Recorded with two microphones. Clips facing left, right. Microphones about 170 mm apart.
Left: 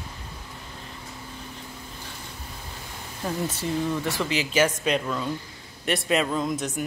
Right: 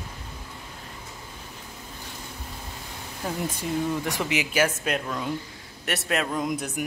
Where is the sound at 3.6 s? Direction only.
15° right (ahead or behind).